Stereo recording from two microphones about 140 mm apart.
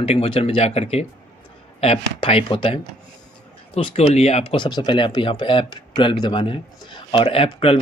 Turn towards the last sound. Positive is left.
turn(degrees=40)  # may be behind; listen again after turning